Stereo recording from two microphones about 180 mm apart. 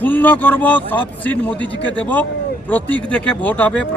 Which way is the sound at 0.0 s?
10° left (ahead or behind).